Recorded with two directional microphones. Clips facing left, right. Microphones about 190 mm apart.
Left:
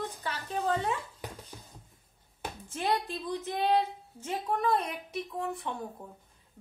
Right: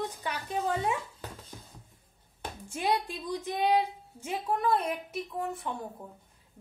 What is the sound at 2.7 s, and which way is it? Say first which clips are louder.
A woman's voice: right 1 dB; 10° right (ahead or behind).